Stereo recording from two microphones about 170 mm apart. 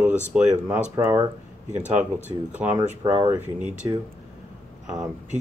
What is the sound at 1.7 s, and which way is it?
Speech, 45° right (ahead or behind).